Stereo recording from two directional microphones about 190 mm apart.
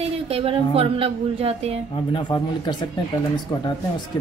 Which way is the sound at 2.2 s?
25° left (ahead or behind).